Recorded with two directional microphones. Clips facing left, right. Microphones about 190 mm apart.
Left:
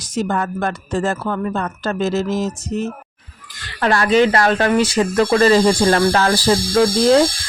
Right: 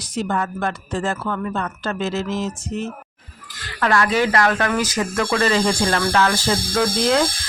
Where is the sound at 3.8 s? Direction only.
30° left (ahead or behind).